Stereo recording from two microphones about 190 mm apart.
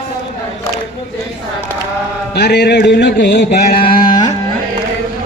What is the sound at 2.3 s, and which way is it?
Mantra, 60° left (ahead or behind).